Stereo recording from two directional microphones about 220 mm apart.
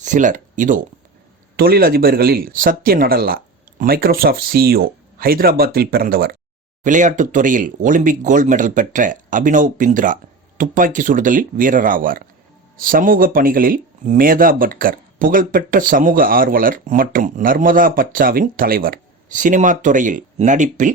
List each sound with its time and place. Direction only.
0.0 s speech: 35° right (ahead or behind)